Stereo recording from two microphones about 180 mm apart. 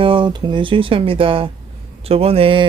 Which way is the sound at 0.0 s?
30° right (ahead or behind).